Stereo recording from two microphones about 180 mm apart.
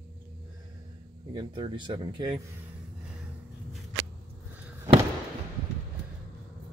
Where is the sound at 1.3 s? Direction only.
25° right (ahead or behind).